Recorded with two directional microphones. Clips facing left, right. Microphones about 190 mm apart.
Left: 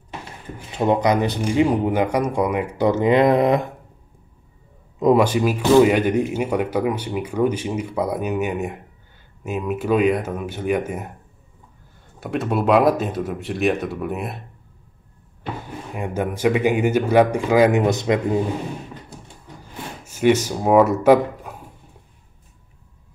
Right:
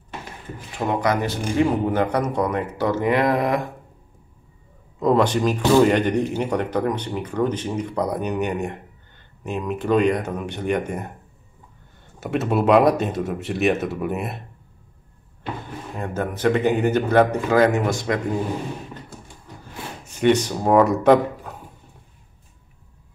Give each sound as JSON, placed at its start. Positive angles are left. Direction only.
{"t": 0.7, "sound": "speech", "side_deg": 20}
{"t": 5.0, "sound": "speech", "side_deg": 10}
{"t": 12.2, "sound": "speech", "side_deg": 0}
{"t": 15.9, "sound": "speech", "side_deg": 10}
{"t": 20.1, "sound": "speech", "side_deg": 5}